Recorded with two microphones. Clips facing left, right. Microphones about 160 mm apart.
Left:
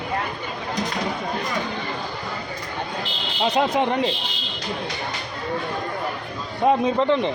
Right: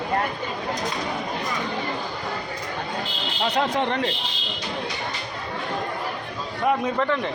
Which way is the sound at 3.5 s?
10° left (ahead or behind).